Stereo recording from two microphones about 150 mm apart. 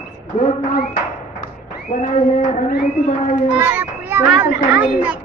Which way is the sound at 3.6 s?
15° right (ahead or behind).